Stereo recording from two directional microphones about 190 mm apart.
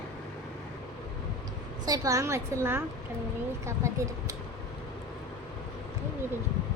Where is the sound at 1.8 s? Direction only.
20° right (ahead or behind).